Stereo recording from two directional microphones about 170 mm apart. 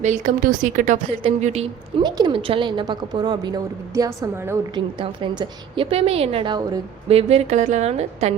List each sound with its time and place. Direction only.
0.0 s a woman's voice: 45° right (ahead or behind)
2.0 s a woman's voice: 25° right (ahead or behind)
4.7 s a woman's voice: 25° right (ahead or behind)